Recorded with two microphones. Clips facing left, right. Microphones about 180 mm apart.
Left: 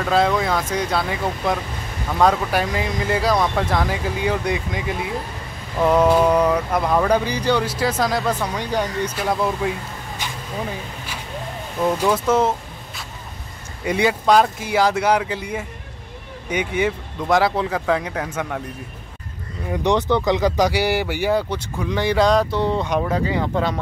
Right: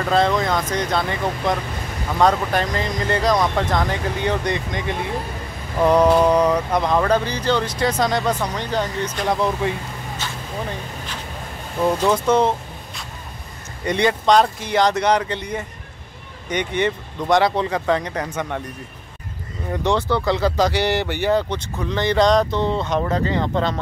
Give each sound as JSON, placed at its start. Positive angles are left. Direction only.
{"t": 0.0, "sound": "speech", "side_deg": 5}
{"t": 10.2, "sound": "a sound", "side_deg": 15}
{"t": 12.3, "sound": "vehicle", "side_deg": 5}
{"t": 13.8, "sound": "speech", "side_deg": 5}
{"t": 19.7, "sound": "speech", "side_deg": 15}